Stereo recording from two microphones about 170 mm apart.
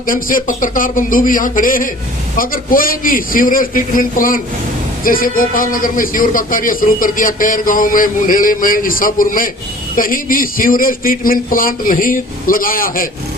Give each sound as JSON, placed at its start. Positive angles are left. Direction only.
{"t": 0.1, "sound": "speech", "side_deg": 55}